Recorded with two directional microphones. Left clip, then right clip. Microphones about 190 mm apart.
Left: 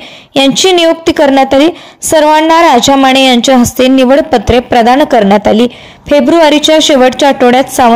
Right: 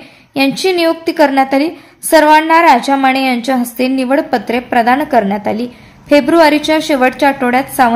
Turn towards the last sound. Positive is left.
turn(degrees=45)  # may be behind; listen again after turning